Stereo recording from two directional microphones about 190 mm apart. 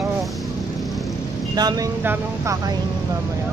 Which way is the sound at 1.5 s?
20° right (ahead or behind).